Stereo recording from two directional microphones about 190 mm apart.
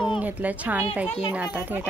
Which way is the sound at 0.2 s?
10° right (ahead or behind).